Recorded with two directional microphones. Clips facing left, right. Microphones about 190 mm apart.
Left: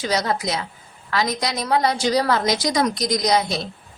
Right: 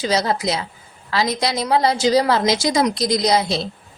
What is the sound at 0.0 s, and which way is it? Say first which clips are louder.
A woman's voice: right 3 dB; 25° right (ahead or behind).